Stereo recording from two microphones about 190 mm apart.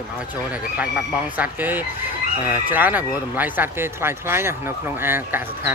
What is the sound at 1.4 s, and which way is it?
Speech, 10° right (ahead or behind).